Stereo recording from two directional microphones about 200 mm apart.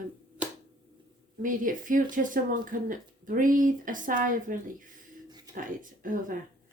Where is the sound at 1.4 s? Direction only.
40° right (ahead or behind).